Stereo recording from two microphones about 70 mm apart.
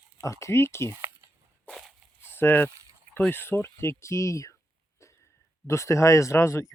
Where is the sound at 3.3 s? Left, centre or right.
Left.